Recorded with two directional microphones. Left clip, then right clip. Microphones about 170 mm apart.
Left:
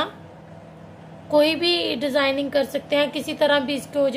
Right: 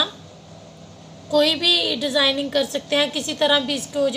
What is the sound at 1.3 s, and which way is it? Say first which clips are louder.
A woman's voice: right 1 dB; 10° left (ahead or behind).